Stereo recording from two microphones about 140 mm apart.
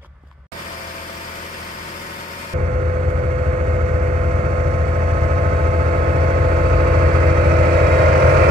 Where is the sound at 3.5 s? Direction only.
50° right (ahead or behind).